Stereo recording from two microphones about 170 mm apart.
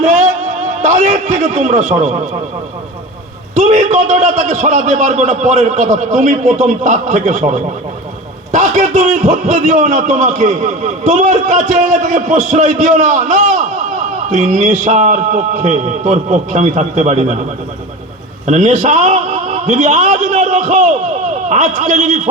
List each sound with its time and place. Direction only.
0.0 s a sound: 45° right (ahead or behind)
3.5 s a man's voice: 45° right (ahead or behind)
18.4 s a man's voice: 45° right (ahead or behind)